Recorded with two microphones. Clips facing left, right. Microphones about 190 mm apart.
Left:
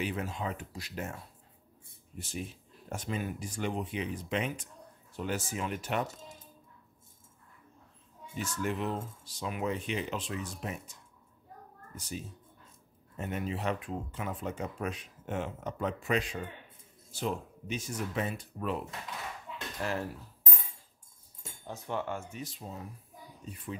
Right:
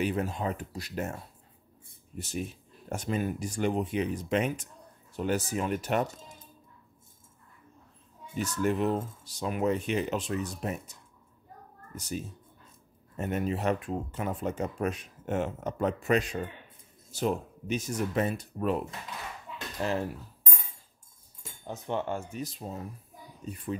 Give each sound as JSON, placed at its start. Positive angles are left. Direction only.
{"t": 0.0, "sound": "speech", "side_deg": -40}
{"t": 8.4, "sound": "speech", "side_deg": -40}
{"t": 19.8, "sound": "speech", "side_deg": -25}
{"t": 21.6, "sound": "speech", "side_deg": -25}